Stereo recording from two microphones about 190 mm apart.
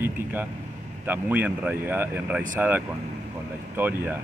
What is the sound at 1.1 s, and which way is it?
Speech, 10° right (ahead or behind).